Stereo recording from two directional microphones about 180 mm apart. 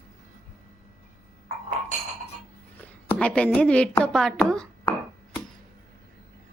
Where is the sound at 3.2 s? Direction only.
5° left (ahead or behind).